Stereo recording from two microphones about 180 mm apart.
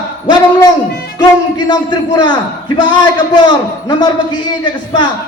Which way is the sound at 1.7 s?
25° left (ahead or behind).